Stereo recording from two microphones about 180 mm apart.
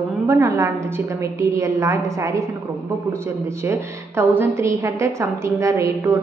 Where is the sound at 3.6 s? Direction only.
10° right (ahead or behind).